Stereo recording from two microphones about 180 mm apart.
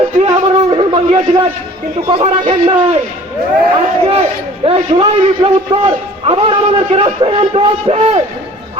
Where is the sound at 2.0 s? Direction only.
35° right (ahead or behind).